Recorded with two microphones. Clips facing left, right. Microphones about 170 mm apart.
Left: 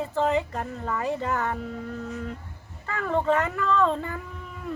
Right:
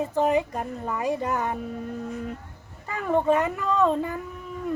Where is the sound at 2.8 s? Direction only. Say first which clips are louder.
Right 2 dB; 15° right (ahead or behind).